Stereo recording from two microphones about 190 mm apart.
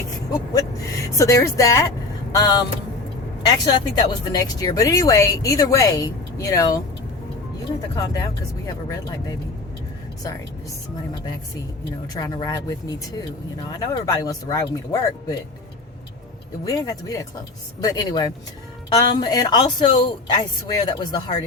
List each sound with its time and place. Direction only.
1.2 s a woman's voice: 15° left (ahead or behind)
12.2 s a woman's voice: 20° left (ahead or behind)
13.7 s a woman's voice: 20° left (ahead or behind)
16.6 s a woman's voice: 20° left (ahead or behind)